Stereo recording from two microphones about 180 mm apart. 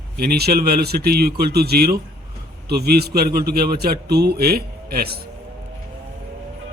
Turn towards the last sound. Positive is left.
turn(degrees=-60)  # may be behind; listen again after turning